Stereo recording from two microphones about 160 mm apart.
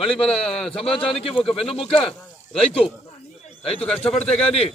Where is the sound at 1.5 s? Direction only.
35° left (ahead or behind).